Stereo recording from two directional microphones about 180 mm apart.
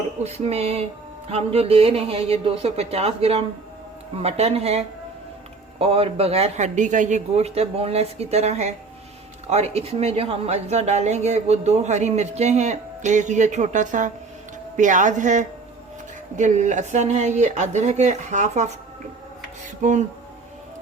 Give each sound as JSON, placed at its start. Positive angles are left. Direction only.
{"t": 0.2, "sound": "speech", "side_deg": -35}
{"t": 5.8, "sound": "a woman's voice", "side_deg": -35}
{"t": 19.8, "sound": "speech", "side_deg": -40}